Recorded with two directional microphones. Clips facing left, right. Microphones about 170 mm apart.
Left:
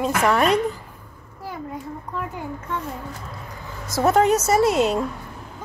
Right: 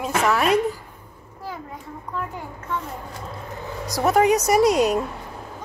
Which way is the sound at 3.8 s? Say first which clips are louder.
Left 1 dB; 15° right (ahead or behind).